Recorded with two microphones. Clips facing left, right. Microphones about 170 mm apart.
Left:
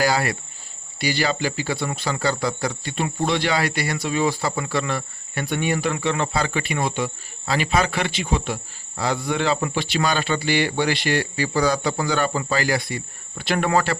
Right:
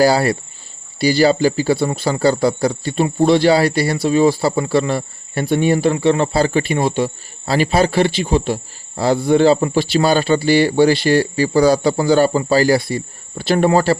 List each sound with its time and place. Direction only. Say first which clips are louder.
0.0 s speech: right 8 dB; 35° right (ahead or behind)